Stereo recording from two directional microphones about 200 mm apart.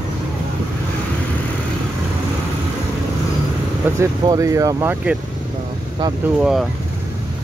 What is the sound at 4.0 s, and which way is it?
Speech, 15° right (ahead or behind).